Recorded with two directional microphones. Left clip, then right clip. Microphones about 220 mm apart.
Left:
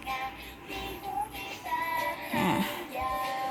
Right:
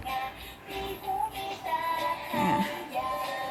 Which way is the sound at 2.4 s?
20° left (ahead or behind).